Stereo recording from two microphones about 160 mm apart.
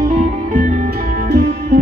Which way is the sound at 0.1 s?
50° right (ahead or behind).